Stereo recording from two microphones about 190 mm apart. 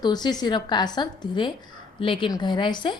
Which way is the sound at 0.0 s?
20° left (ahead or behind).